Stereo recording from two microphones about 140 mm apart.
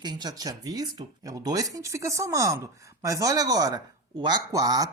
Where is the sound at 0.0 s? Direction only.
30° right (ahead or behind).